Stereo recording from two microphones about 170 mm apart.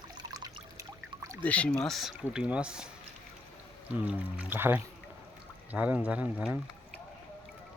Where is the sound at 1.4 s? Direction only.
5° left (ahead or behind).